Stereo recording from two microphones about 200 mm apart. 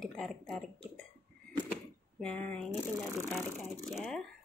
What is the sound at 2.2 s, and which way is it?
Speech, 5° left (ahead or behind).